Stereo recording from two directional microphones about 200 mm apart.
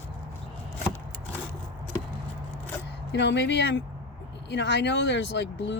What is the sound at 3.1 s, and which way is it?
Speech, 60° left (ahead or behind).